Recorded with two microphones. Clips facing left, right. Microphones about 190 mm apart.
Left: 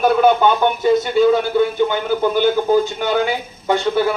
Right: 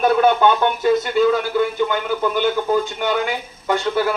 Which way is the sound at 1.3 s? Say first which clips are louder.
Left 3 dB; 25° left (ahead or behind).